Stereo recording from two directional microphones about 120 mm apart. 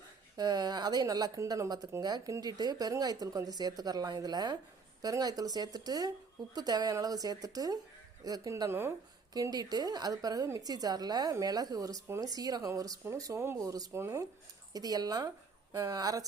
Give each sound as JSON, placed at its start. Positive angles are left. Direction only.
{"t": 0.3, "sound": "a woman's voice", "side_deg": -35}
{"t": 9.3, "sound": "a woman's voice", "side_deg": -35}